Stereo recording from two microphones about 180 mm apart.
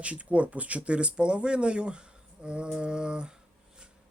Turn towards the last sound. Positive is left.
turn(degrees=-5)  # may be behind; listen again after turning